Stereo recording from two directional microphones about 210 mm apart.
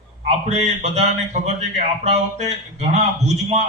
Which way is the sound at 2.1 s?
30° right (ahead or behind).